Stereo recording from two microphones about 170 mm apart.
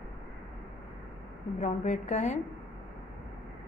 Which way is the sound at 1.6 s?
40° left (ahead or behind).